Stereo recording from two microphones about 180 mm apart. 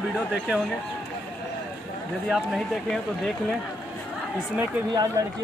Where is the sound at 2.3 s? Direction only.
Centre (ahead or behind).